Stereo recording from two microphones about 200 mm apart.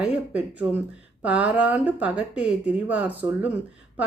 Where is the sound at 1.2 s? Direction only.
5° right (ahead or behind).